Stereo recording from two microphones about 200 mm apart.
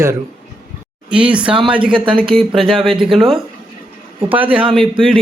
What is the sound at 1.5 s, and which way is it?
Speech, 25° right (ahead or behind).